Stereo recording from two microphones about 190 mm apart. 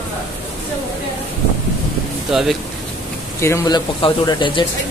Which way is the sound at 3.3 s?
15° left (ahead or behind).